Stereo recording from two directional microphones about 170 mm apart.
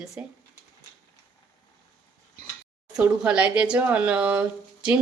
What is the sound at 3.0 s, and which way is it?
Speech, 5° right (ahead or behind).